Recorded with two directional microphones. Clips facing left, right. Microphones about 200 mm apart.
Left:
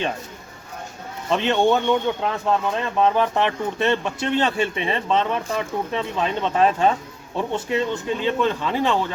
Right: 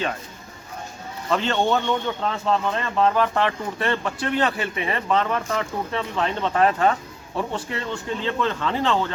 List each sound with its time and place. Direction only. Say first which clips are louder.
1.3 s speech: left 3 dB; 15° left (ahead or behind)